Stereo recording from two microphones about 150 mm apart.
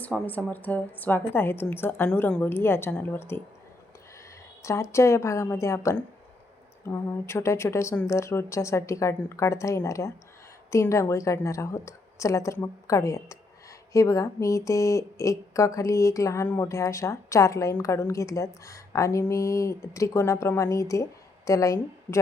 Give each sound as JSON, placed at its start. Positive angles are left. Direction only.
{"t": 0.0, "sound": "a woman's voice", "side_deg": 10}
{"t": 4.6, "sound": "speech", "side_deg": 20}